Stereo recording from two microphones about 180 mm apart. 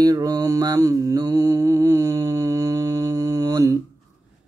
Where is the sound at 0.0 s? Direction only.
20° right (ahead or behind).